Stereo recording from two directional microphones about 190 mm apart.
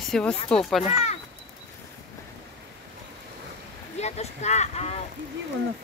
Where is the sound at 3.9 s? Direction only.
35° left (ahead or behind).